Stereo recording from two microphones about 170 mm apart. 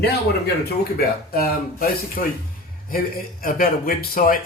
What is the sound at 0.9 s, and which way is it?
A man's voice, 60° left (ahead or behind).